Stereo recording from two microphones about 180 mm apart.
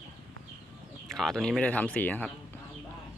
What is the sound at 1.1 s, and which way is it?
Speech, centre (ahead or behind).